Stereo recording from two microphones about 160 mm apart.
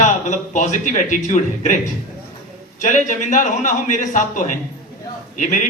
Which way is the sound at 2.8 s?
50° left (ahead or behind).